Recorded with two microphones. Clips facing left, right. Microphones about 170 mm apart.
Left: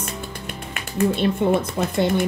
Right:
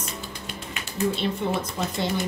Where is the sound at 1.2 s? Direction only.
60° left (ahead or behind).